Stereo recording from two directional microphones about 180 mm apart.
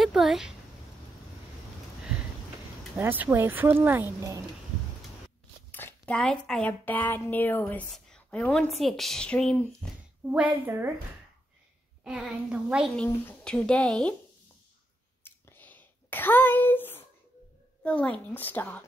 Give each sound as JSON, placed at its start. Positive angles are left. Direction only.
{"t": 0.0, "sound": "speech", "side_deg": 0}
{"t": 3.0, "sound": "speech", "side_deg": -10}
{"t": 5.7, "sound": "a woman's voice", "side_deg": 10}
{"t": 10.3, "sound": "speech", "side_deg": -10}
{"t": 12.0, "sound": "a woman's voice", "side_deg": -5}
{"t": 15.2, "sound": "a sound", "side_deg": 10}
{"t": 17.8, "sound": "a woman's voice", "side_deg": 5}